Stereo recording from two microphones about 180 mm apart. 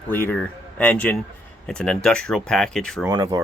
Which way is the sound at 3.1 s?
20° right (ahead or behind).